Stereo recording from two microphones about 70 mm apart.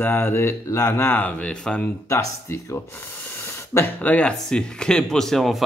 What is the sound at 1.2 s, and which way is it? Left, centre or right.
Speech, centre.